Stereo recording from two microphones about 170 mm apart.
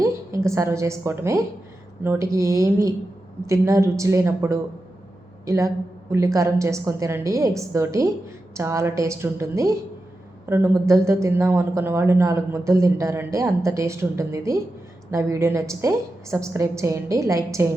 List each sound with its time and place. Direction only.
0.0 s a woman's voice: 15° right (ahead or behind)